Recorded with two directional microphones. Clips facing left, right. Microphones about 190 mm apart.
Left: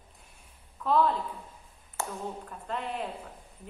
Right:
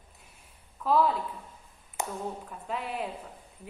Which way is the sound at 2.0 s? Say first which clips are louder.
Right 1 dB; 15° right (ahead or behind).